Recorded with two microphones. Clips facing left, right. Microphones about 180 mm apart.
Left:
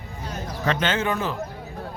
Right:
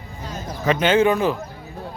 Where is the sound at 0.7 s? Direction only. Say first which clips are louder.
Right 7 dB; 15° right (ahead or behind).